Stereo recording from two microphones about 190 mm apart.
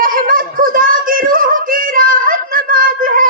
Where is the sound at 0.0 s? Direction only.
45° right (ahead or behind).